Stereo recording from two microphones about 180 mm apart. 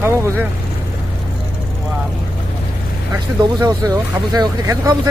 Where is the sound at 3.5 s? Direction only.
20° right (ahead or behind).